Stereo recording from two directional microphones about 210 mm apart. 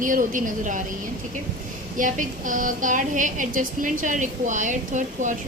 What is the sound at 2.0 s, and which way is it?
A woman's voice, 40° right (ahead or behind).